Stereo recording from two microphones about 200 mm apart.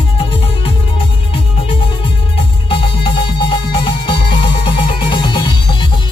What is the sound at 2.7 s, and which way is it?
Music, 25° left (ahead or behind).